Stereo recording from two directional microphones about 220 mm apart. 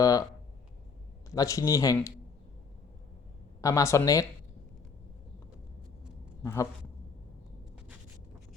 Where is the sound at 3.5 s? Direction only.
15° left (ahead or behind).